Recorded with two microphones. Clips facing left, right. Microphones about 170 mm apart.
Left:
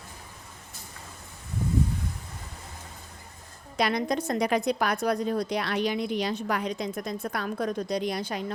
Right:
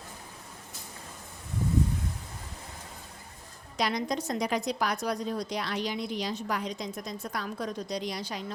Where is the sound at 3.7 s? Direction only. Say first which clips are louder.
Left 4 dB; 60° left (ahead or behind).